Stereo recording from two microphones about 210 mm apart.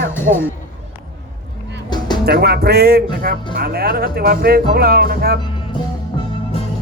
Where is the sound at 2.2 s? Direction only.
50° right (ahead or behind).